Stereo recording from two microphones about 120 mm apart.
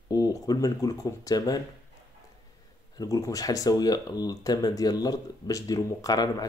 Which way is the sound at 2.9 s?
30° left (ahead or behind).